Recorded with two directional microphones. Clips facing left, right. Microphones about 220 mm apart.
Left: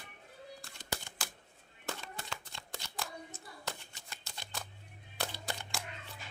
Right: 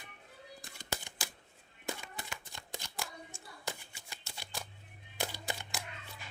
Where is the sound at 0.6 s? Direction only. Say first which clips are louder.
Right 1 dB; 15° right (ahead or behind).